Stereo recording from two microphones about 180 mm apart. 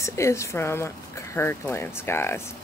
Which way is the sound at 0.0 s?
15° left (ahead or behind).